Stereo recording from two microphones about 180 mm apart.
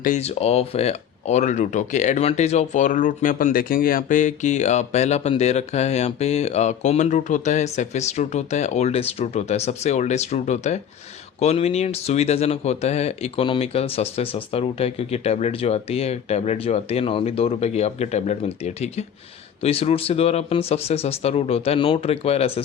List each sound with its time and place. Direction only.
0.0 s speech: 40° left (ahead or behind)